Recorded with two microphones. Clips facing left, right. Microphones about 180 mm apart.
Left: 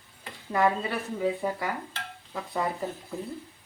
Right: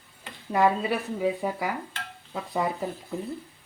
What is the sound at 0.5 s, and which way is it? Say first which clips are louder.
A woman's voice: right 2 dB; 15° right (ahead or behind).